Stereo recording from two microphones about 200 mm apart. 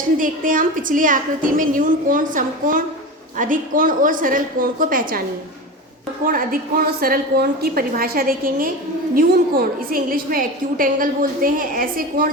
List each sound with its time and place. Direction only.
0.2 s a woman's voice: 40° right (ahead or behind)
6.2 s a woman's voice: 45° right (ahead or behind)